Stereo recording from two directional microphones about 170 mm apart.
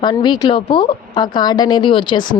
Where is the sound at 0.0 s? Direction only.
25° left (ahead or behind).